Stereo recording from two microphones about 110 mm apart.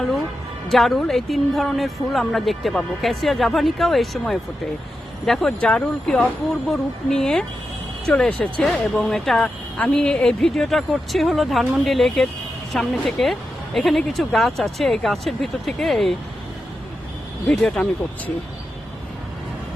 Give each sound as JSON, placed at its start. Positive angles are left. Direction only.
{"t": 0.7, "sound": "a woman's voice", "side_deg": 0}
{"t": 17.5, "sound": "a woman's voice", "side_deg": 5}